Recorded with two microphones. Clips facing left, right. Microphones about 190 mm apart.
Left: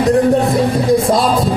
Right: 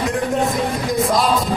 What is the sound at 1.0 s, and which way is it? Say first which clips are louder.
Music: left 4 dB; 30° left (ahead or behind).